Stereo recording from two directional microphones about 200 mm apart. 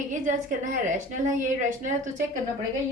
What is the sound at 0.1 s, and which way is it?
A woman's voice, 40° right (ahead or behind).